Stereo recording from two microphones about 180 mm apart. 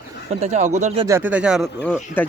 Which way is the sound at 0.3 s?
40° right (ahead or behind).